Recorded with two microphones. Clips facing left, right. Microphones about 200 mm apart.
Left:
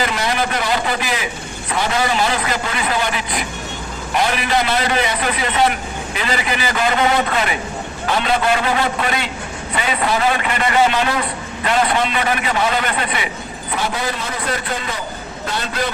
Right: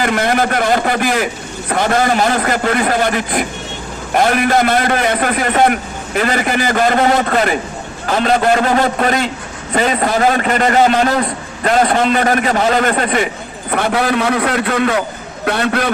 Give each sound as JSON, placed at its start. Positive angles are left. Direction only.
{"t": 0.0, "sound": "a man's voice", "side_deg": -50}
{"t": 13.7, "sound": "a man's voice", "side_deg": -60}